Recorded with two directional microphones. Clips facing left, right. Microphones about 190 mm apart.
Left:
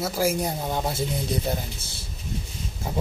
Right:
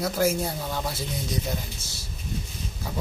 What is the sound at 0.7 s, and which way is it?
Speech, 25° left (ahead or behind).